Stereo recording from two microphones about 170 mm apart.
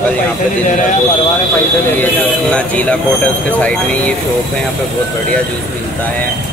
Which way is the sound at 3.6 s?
10° left (ahead or behind).